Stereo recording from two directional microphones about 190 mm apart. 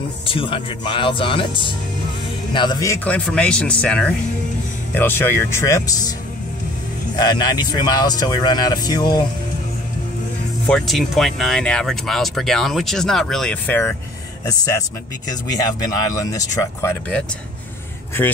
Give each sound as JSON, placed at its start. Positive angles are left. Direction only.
{"t": 0.3, "sound": "speech", "side_deg": 25}
{"t": 7.2, "sound": "speech", "side_deg": 20}
{"t": 10.7, "sound": "speech", "side_deg": 0}
{"t": 16.2, "sound": "speech", "side_deg": 15}